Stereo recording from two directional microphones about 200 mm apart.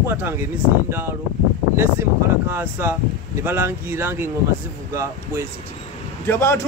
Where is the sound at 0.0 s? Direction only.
10° right (ahead or behind).